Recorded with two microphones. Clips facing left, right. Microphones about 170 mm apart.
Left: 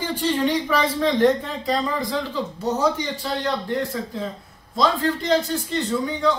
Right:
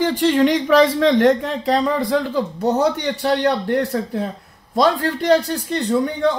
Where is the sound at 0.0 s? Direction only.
90° right; by 4.3 s 65° right (ahead or behind).